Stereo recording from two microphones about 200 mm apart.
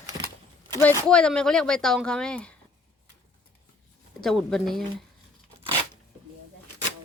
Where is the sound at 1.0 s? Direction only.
5° left (ahead or behind).